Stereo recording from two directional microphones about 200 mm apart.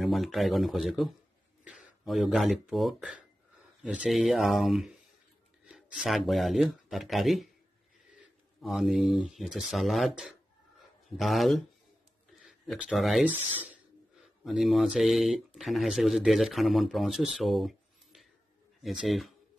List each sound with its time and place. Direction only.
0.0 s speech: centre (ahead or behind)
8.5 s speech: centre (ahead or behind)